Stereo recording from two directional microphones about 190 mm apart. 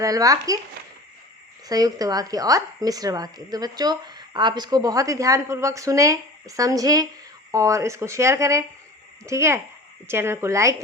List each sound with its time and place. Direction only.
0.0 s speech: 20° right (ahead or behind)
1.6 s speech: 20° right (ahead or behind)